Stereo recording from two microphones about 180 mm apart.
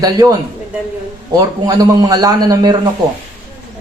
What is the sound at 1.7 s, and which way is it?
Speech, 20° right (ahead or behind).